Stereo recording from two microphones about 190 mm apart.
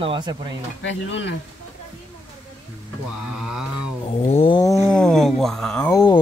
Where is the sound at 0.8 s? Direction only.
75° left (ahead or behind).